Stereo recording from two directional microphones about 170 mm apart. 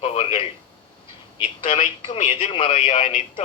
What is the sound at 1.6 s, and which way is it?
Speech, 45° left (ahead or behind).